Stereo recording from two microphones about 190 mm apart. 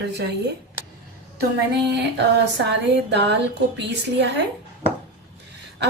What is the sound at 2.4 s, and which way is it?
A woman's voice, 65° right (ahead or behind).